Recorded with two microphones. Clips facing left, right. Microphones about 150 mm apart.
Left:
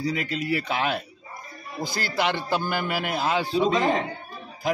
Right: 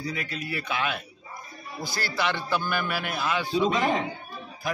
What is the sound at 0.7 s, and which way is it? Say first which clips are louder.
Speech: left 3 dB; 40° left (ahead or behind).